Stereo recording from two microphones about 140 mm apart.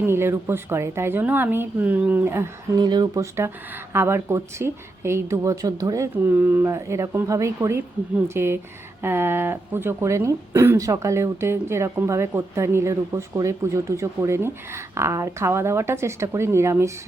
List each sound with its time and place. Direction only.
0.0 s a woman's voice: 15° right (ahead or behind)
2.7 s speech: 30° right (ahead or behind)
3.9 s a woman's voice: 20° right (ahead or behind)